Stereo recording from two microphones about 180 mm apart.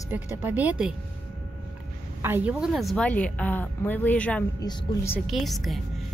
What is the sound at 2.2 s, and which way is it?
Speech, 10° right (ahead or behind).